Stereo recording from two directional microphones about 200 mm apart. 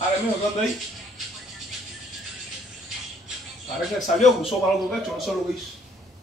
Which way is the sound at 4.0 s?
35° left (ahead or behind).